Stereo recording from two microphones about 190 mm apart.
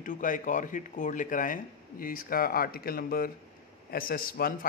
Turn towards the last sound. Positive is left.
turn(degrees=50)  # may be behind; listen again after turning